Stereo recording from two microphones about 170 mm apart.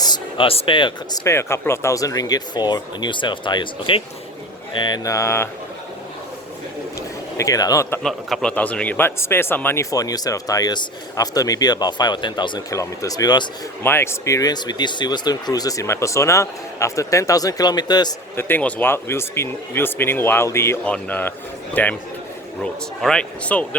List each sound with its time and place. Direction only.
0.0 s speech: 25° left (ahead or behind)
7.3 s speech: 20° left (ahead or behind)
8.0 s speech: 5° left (ahead or behind); by 18.1 s 25° left (ahead or behind)
18.3 s speech: 10° left (ahead or behind)
23.0 s speech: 5° left (ahead or behind)